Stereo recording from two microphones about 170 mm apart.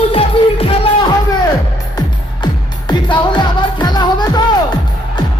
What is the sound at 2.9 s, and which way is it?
Music, 25° left (ahead or behind).